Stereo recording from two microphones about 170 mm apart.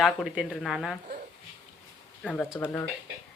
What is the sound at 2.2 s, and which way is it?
Speech, 5° left (ahead or behind).